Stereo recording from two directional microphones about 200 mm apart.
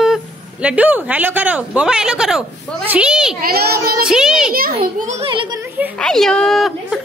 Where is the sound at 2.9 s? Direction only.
5° right (ahead or behind).